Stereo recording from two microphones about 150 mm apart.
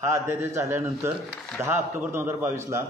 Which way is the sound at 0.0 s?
20° right (ahead or behind).